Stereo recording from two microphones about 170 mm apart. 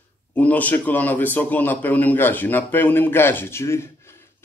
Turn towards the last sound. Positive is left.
turn(degrees=15)  # may be behind; listen again after turning